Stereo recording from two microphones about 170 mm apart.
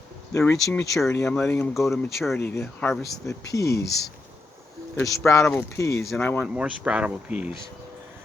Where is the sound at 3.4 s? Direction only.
20° left (ahead or behind).